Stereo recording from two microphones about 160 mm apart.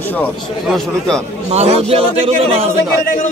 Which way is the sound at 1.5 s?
40° right (ahead or behind).